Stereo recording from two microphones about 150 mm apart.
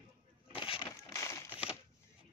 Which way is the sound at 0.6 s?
35° left (ahead or behind).